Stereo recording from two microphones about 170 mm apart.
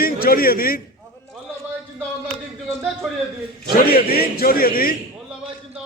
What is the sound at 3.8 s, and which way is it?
A man's voice, 60° left (ahead or behind).